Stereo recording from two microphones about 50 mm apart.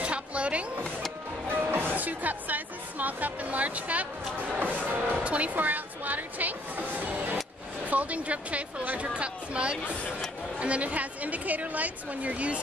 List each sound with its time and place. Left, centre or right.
0.0 s a sound: right
1.6 s music: right
4.6 s a woman's voice: right